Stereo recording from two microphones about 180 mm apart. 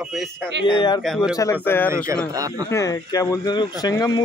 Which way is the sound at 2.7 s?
15° left (ahead or behind).